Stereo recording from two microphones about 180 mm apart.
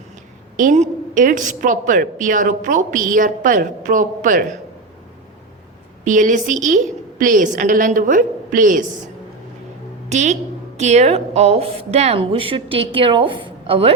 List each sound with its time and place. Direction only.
0.5 s a woman's voice: 45° right (ahead or behind)
6.1 s a woman's voice: 45° right (ahead or behind)
10.1 s a woman's voice: 40° right (ahead or behind)